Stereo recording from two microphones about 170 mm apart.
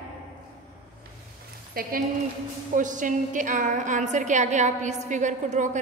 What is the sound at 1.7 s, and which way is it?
Speech, 60° right (ahead or behind).